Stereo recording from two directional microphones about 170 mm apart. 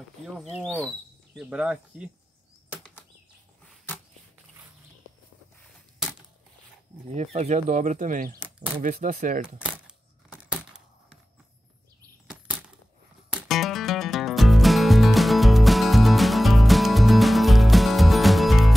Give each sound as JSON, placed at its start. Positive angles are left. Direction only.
{"t": 0.6, "sound": "speech", "side_deg": 5}
{"t": 1.3, "sound": "speech", "side_deg": -5}
{"t": 2.7, "sound": "bird flight", "side_deg": 10}
{"t": 7.2, "sound": "speech", "side_deg": -45}
{"t": 9.6, "sound": "a sound", "side_deg": -5}
{"t": 12.3, "sound": "bird flight", "side_deg": -5}
{"t": 13.3, "sound": "music", "side_deg": -5}